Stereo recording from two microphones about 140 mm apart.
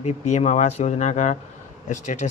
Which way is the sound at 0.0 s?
50° left (ahead or behind).